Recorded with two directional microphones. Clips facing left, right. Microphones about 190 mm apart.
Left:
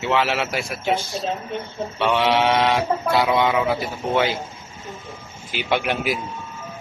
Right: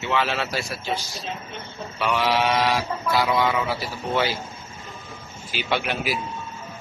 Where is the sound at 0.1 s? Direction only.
20° left (ahead or behind).